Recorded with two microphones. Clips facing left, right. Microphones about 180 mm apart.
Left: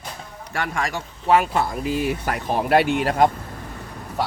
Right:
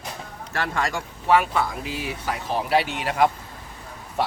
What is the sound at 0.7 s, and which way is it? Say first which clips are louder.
Speech: right 1 dB; 20° left (ahead or behind).